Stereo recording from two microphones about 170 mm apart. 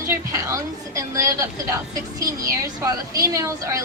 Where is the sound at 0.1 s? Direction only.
15° right (ahead or behind).